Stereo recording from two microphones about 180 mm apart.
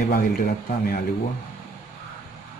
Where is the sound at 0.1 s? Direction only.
55° left (ahead or behind).